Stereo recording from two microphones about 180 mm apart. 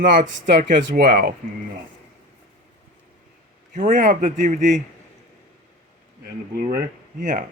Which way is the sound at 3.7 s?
45° right (ahead or behind).